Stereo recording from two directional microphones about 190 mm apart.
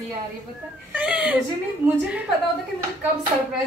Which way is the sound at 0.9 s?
5° right (ahead or behind).